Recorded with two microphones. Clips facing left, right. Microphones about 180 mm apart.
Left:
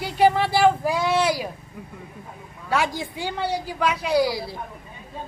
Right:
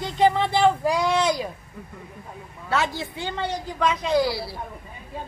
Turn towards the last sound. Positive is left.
turn(degrees=15)  # may be behind; listen again after turning